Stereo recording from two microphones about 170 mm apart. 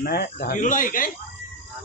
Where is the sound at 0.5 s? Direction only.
50° left (ahead or behind).